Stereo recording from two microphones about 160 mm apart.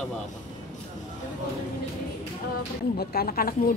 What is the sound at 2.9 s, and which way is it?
Speech, 75° left (ahead or behind).